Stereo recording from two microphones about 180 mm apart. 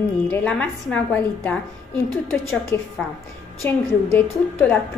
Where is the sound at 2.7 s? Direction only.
10° left (ahead or behind).